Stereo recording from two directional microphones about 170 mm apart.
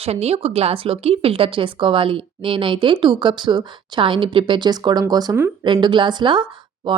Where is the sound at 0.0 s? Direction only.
35° right (ahead or behind).